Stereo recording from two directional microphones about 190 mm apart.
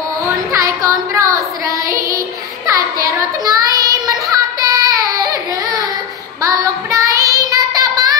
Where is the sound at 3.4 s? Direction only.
20° right (ahead or behind).